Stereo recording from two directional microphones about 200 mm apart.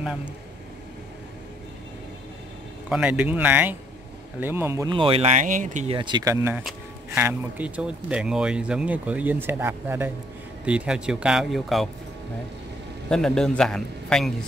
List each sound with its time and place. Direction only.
2.9 s speech: 5° right (ahead or behind)
4.9 s speech: 25° right (ahead or behind)
5.9 s speech: 25° right (ahead or behind); by 11.9 s centre (ahead or behind)
13.1 s speech: 5° left (ahead or behind)